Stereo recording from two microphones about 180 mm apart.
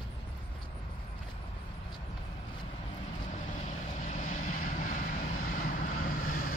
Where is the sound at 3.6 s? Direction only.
45° left (ahead or behind).